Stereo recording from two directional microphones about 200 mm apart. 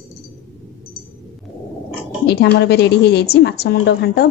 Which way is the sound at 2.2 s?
55° left (ahead or behind).